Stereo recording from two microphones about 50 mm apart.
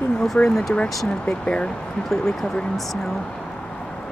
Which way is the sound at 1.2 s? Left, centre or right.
Left.